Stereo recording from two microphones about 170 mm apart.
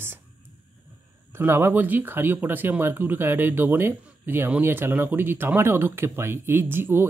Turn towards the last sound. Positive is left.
turn(degrees=-10)  # may be behind; listen again after turning